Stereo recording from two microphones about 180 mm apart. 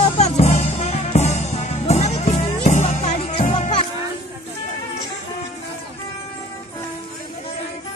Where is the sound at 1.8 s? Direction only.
35° left (ahead or behind).